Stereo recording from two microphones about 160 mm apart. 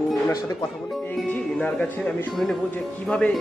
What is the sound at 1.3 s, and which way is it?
Speech, 10° left (ahead or behind).